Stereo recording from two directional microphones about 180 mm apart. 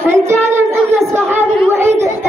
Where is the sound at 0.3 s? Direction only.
15° right (ahead or behind).